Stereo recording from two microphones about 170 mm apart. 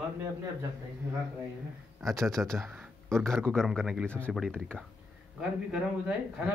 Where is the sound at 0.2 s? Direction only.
20° right (ahead or behind).